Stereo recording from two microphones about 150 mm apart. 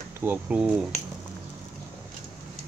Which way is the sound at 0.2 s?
10° right (ahead or behind).